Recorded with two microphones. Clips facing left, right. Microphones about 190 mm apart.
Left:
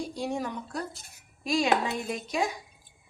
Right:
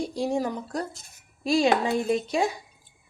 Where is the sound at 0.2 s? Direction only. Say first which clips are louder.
Right 6 dB; 35° right (ahead or behind).